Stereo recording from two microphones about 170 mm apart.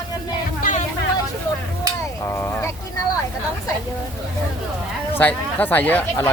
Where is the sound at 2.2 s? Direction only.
15° left (ahead or behind).